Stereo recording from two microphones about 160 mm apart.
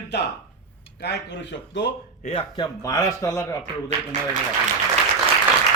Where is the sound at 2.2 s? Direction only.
30° left (ahead or behind).